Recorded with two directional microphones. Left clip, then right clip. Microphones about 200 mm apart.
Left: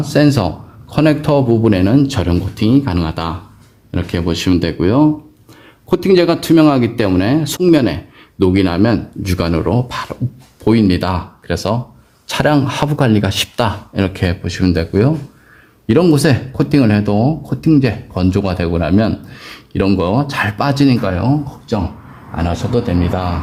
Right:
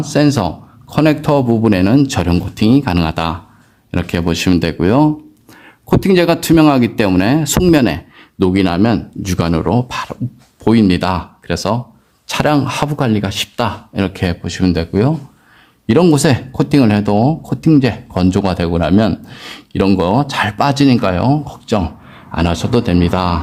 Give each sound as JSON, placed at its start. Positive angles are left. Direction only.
{"t": 0.0, "sound": "speech", "side_deg": -15}